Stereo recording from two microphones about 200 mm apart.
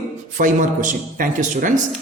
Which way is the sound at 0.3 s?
40° right (ahead or behind).